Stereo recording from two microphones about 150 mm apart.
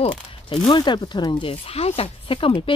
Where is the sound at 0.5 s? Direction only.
30° left (ahead or behind).